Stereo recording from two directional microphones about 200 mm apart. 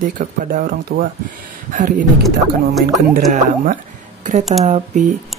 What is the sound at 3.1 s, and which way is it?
Speech, 40° right (ahead or behind).